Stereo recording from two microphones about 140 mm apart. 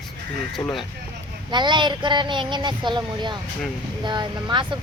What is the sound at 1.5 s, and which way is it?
Speech, 35° right (ahead or behind).